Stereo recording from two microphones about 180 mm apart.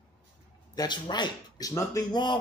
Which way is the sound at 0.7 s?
20° left (ahead or behind).